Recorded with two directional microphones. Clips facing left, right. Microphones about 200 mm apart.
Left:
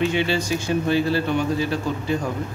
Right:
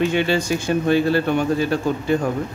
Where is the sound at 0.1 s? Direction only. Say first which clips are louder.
Right 3 dB; 50° right (ahead or behind).